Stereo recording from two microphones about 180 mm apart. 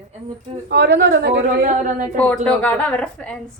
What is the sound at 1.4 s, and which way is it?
Speech, 45° right (ahead or behind).